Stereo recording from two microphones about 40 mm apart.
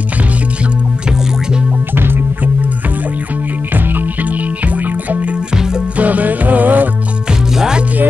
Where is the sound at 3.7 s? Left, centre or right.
Right.